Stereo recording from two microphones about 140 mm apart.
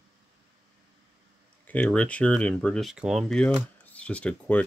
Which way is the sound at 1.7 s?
10° left (ahead or behind).